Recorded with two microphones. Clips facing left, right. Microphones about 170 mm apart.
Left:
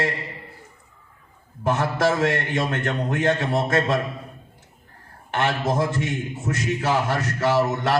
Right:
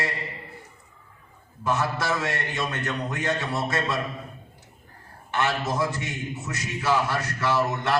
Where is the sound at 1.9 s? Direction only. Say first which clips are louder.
Left 7 dB; 50° left (ahead or behind).